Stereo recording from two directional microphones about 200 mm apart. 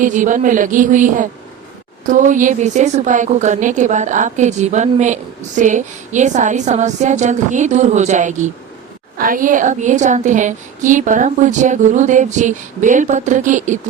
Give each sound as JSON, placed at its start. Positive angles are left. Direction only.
{"t": 0.0, "sound": "a woman's voice", "side_deg": -40}